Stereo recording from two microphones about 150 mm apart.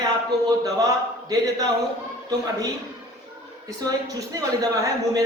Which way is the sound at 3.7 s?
25° right (ahead or behind).